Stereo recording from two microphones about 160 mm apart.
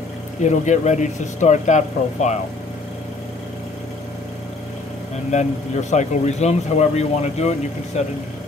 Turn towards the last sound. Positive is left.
turn(degrees=45)  # may be behind; listen again after turning